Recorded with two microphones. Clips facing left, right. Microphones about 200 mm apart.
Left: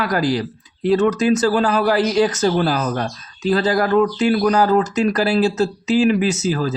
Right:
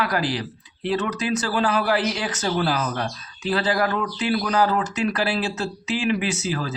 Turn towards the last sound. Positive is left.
turn(degrees=40)  # may be behind; listen again after turning